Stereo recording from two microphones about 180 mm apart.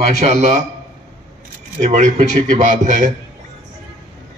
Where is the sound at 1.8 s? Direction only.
40° right (ahead or behind).